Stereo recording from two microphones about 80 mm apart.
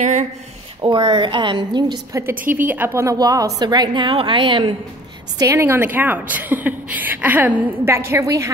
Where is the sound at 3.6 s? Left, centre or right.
Right.